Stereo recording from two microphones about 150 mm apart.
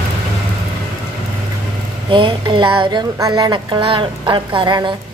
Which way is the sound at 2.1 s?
35° right (ahead or behind).